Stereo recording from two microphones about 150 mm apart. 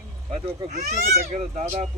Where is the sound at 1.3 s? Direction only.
50° right (ahead or behind).